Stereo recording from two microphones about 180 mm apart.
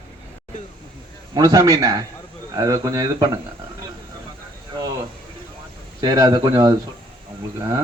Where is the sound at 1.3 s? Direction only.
20° right (ahead or behind).